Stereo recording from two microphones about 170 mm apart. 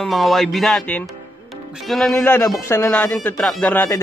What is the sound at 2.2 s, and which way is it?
Speech, 15° left (ahead or behind).